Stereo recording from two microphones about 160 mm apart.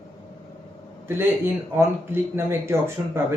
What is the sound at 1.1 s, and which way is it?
Speech, 15° right (ahead or behind).